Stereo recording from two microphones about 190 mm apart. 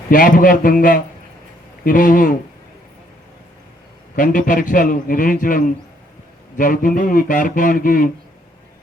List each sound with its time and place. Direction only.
0.1 s a man's voice: 45° left (ahead or behind)
4.1 s a man's voice: 45° left (ahead or behind)